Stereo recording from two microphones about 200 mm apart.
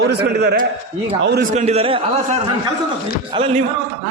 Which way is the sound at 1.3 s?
40° right (ahead or behind).